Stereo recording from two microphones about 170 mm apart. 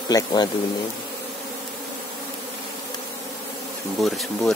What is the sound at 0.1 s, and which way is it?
Speech, 25° left (ahead or behind).